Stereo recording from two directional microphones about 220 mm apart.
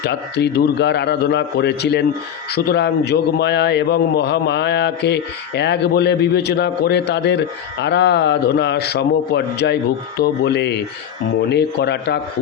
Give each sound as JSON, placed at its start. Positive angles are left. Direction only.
{"t": 0.0, "sound": "a man's voice", "side_deg": 50}